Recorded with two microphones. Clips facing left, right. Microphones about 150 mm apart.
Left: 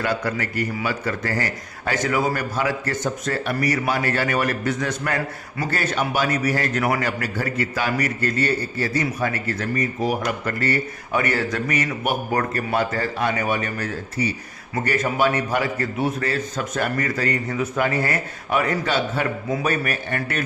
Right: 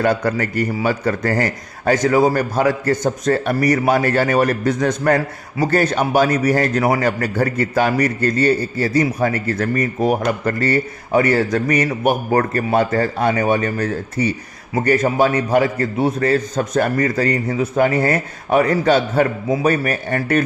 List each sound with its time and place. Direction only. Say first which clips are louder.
0.0 s a man's voice: right 6 dB; 45° right (ahead or behind)
9.6 s a man's voice: right 4 dB; 55° right (ahead or behind)